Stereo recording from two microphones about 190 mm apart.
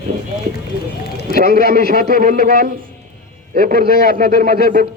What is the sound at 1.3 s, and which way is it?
A man's voice, 55° right (ahead or behind).